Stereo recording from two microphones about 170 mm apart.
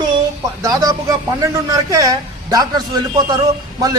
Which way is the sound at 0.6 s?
20° right (ahead or behind).